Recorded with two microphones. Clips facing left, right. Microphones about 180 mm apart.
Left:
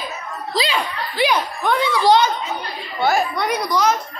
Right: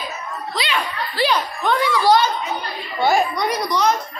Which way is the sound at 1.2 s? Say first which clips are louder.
Left 1 dB; 15° left (ahead or behind).